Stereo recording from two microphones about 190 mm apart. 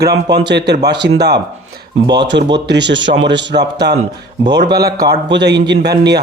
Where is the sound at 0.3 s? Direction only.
65° right (ahead or behind).